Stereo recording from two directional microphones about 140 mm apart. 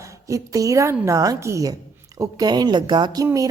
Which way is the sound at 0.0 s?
20° right (ahead or behind).